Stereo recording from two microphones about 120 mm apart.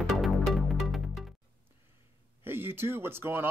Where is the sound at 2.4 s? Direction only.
20° right (ahead or behind).